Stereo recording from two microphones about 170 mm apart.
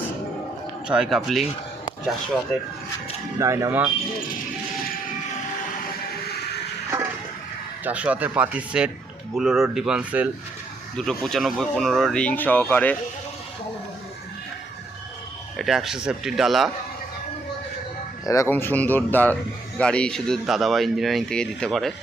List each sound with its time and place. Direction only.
0.9 s speech: 5° right (ahead or behind)
3.3 s speech: 20° right (ahead or behind)
7.9 s speech: 10° right (ahead or behind)
10.9 s speech: 5° left (ahead or behind)
15.5 s speech: centre (ahead or behind)
18.3 s speech: 15° left (ahead or behind)